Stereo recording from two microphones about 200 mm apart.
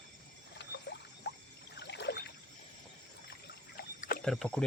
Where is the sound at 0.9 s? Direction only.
55° left (ahead or behind).